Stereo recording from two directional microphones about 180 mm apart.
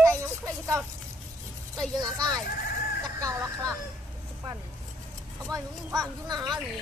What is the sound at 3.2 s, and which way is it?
Speech, 20° right (ahead or behind).